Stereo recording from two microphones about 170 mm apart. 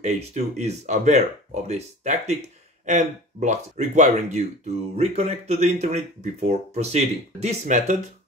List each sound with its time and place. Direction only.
0.0 s speech: 40° right (ahead or behind)